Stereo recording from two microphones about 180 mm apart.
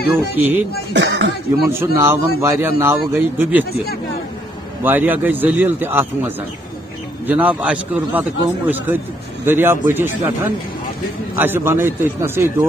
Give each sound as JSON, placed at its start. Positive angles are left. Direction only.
{"t": 0.1, "sound": "a man's voice", "side_deg": -10}
{"t": 0.9, "sound": "speech", "side_deg": -75}
{"t": 1.7, "sound": "a man's voice", "side_deg": -15}
{"t": 4.8, "sound": "a man's voice", "side_deg": -10}